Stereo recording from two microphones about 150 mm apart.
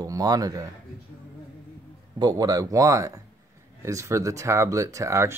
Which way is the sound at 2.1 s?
25° right (ahead or behind).